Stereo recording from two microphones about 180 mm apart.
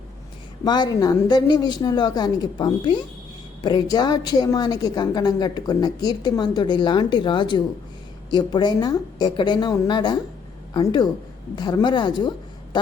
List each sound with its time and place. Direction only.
0.6 s a woman's voice: 25° left (ahead or behind)